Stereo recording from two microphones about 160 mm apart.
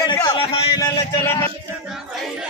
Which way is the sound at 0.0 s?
25° left (ahead or behind).